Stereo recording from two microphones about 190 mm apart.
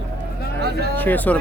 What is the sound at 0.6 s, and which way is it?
Speech, 55° right (ahead or behind).